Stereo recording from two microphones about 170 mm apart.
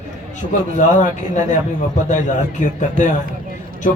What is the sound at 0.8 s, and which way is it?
A man's voice, 45° left (ahead or behind).